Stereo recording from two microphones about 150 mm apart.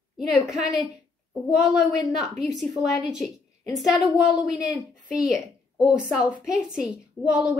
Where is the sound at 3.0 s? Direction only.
Centre (ahead or behind).